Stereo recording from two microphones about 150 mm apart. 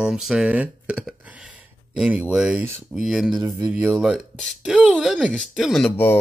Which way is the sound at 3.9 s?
Centre (ahead or behind).